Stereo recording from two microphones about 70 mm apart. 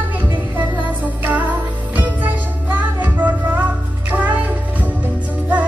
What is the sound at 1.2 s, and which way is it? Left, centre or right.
Music, right.